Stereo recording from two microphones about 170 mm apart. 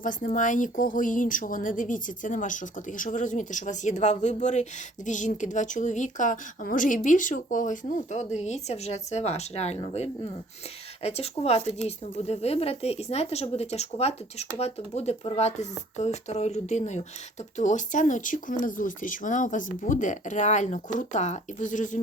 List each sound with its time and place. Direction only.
0.0 s a woman's voice: 50° left (ahead or behind)